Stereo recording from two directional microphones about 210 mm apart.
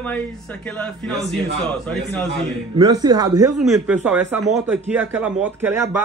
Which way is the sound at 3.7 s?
5° right (ahead or behind).